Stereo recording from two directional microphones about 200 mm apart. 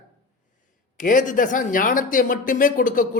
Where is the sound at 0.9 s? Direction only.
40° left (ahead or behind).